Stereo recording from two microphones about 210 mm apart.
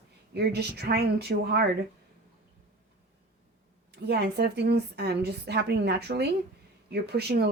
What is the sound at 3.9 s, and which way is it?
Speech, 50° right (ahead or behind).